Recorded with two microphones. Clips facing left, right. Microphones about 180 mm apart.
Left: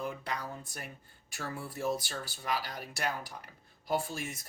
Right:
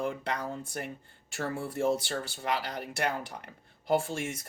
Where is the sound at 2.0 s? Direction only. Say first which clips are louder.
Right 6 dB; 70° right (ahead or behind).